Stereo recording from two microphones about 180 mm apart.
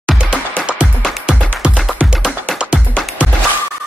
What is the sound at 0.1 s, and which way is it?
Music, 5° left (ahead or behind).